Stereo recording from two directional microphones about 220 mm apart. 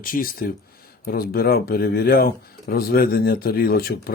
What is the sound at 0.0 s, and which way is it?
Speech, 40° left (ahead or behind).